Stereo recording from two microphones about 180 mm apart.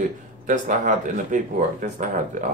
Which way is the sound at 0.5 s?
45° right (ahead or behind).